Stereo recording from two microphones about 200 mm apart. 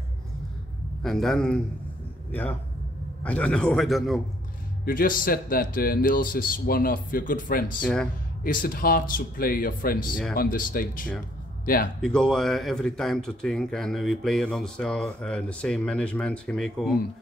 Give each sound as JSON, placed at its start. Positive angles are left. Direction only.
{"t": 1.0, "sound": "speech", "side_deg": 0}
{"t": 3.3, "sound": "speech", "side_deg": 5}
{"t": 4.8, "sound": "speech", "side_deg": 45}
{"t": 7.8, "sound": "speech", "side_deg": 5}
{"t": 8.5, "sound": "speech", "side_deg": 45}
{"t": 12.0, "sound": "speech", "side_deg": 5}